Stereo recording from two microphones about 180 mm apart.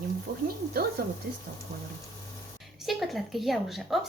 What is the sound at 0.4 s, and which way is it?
Speech, 55° right (ahead or behind).